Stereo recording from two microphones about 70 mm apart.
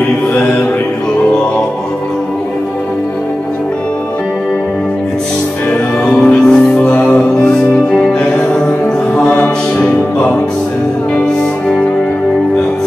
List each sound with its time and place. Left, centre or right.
0.3 s mantra: left
6.1 s music: centre